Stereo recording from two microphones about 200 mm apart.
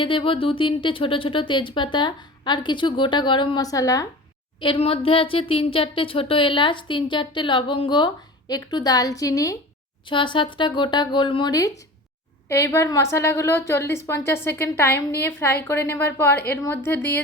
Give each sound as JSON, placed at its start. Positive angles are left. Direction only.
{"t": 0.0, "sound": "speech", "side_deg": 25}
{"t": 4.6, "sound": "a woman's voice", "side_deg": 25}